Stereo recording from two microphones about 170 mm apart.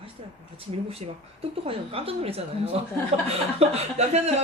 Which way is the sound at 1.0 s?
40° right (ahead or behind).